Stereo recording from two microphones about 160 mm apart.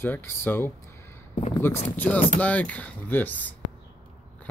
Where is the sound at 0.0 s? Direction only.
15° left (ahead or behind).